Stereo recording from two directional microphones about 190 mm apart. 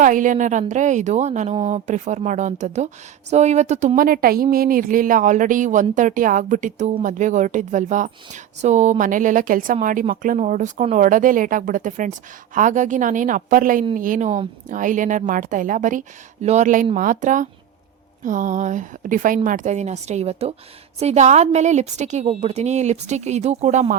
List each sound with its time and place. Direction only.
0.0 s a woman's voice: 45° right (ahead or behind)